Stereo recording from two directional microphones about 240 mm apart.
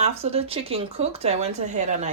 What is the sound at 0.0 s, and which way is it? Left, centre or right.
Speech, right.